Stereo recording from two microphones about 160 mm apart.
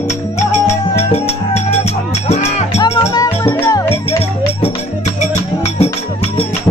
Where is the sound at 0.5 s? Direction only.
40° left (ahead or behind).